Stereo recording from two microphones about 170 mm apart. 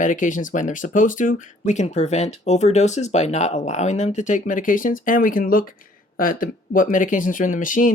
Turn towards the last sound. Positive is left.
turn(degrees=50)  # may be behind; listen again after turning